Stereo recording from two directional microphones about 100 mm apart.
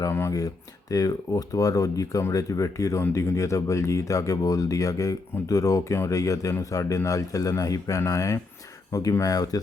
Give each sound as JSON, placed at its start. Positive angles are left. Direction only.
{"t": 0.1, "sound": "speech", "side_deg": 25}
{"t": 0.3, "sound": "speech", "side_deg": 40}